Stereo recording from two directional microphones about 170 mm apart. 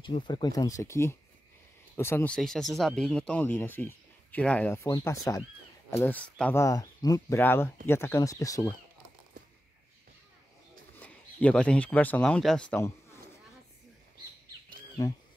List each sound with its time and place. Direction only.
0.0 s speech: 30° left (ahead or behind); by 6.6 s 5° left (ahead or behind)
6.6 s speech: 20° left (ahead or behind)
11.0 s speech: 10° left (ahead or behind)